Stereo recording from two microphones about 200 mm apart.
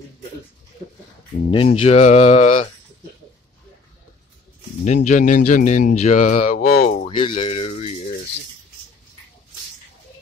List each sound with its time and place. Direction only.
1.5 s speech: 30° left (ahead or behind)
4.8 s speech: 35° left (ahead or behind)
7.1 s rattle: 25° left (ahead or behind)